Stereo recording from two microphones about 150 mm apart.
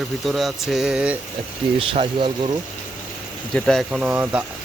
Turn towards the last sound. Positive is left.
turn(degrees=-10)  # may be behind; listen again after turning